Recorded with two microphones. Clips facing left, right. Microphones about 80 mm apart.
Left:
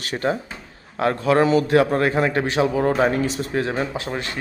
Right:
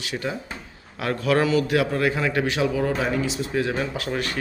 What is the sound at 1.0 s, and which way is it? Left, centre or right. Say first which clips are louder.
A man's voice: left 4 dB; left.